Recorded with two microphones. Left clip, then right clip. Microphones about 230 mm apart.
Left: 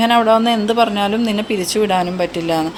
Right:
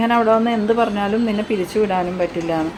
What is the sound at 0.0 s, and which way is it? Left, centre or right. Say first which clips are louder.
A woman's voice: left 3 dB; left.